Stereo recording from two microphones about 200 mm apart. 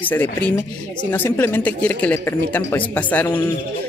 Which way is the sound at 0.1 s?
10° left (ahead or behind).